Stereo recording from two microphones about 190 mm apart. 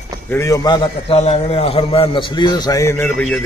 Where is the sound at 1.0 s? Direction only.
30° left (ahead or behind); by 3.4 s 10° left (ahead or behind).